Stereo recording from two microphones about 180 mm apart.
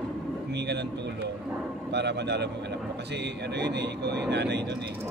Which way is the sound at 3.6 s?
70° right (ahead or behind).